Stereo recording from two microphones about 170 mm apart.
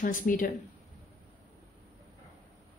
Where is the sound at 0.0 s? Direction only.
50° left (ahead or behind).